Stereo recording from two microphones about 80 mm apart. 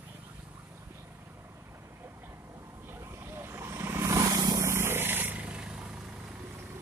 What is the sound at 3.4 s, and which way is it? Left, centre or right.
Vehicle, right.